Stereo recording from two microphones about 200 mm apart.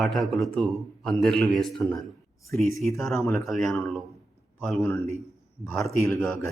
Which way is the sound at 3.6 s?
15° left (ahead or behind).